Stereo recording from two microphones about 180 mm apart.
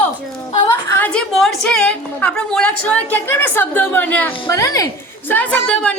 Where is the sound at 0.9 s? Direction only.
10° left (ahead or behind).